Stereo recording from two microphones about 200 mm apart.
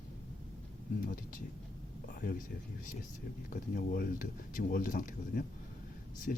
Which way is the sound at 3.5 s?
45° left (ahead or behind).